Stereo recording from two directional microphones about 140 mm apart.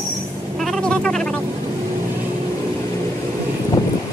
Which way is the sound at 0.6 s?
Centre (ahead or behind).